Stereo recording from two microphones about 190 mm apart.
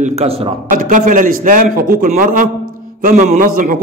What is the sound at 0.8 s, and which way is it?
A man's voice, 45° right (ahead or behind).